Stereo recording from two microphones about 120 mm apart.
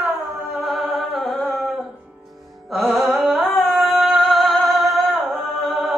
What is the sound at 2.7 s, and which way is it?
Music, centre (ahead or behind).